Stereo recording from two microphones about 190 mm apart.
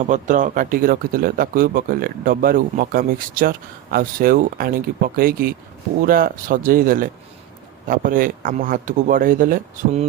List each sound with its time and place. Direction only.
0.0 s speech: 40° right (ahead or behind)